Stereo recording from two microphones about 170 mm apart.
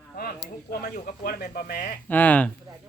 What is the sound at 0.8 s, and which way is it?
Speech, 60° left (ahead or behind).